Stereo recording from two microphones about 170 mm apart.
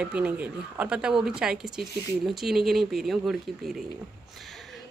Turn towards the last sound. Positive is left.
turn(degrees=0)  # may be behind; listen again after turning